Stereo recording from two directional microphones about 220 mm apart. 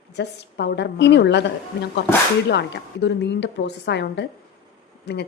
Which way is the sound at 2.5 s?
50° left (ahead or behind).